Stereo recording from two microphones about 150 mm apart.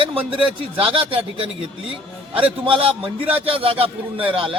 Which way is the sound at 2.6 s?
40° right (ahead or behind).